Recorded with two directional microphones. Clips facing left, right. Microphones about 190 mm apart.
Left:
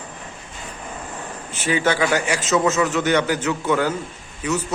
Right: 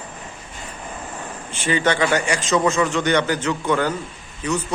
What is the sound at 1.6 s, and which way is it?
A man's voice, 5° left (ahead or behind).